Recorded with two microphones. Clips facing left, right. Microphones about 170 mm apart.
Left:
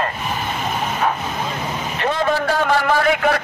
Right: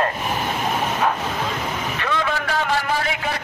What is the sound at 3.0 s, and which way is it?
Speech, 55° left (ahead or behind).